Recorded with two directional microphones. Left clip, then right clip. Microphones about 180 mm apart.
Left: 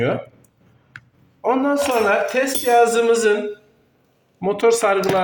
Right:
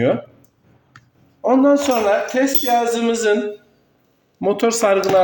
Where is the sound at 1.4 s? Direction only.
20° right (ahead or behind).